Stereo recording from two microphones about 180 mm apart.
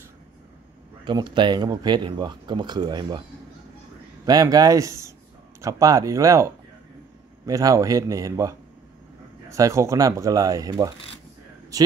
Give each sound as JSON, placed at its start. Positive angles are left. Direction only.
{"t": 1.0, "sound": "speech", "side_deg": -25}
{"t": 4.3, "sound": "speech", "side_deg": -20}